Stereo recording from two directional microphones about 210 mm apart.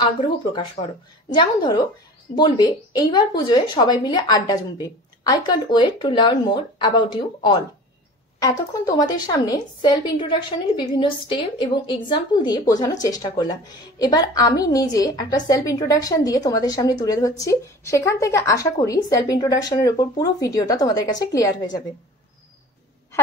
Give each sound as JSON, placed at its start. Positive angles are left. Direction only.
{"t": 0.0, "sound": "a woman's voice", "side_deg": 20}